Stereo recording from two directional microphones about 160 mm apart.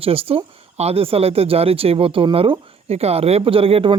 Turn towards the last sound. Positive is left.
turn(degrees=-35)  # may be behind; listen again after turning